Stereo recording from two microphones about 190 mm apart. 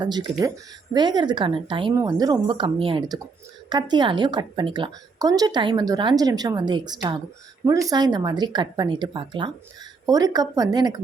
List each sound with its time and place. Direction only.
0.0 s a woman's voice: 20° right (ahead or behind)